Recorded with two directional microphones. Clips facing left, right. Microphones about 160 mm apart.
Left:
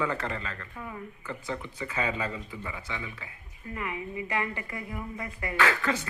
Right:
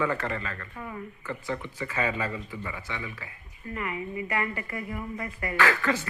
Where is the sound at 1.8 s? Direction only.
20° left (ahead or behind).